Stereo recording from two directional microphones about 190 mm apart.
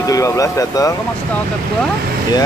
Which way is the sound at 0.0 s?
20° left (ahead or behind).